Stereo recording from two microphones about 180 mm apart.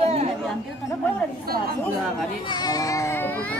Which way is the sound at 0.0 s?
35° right (ahead or behind).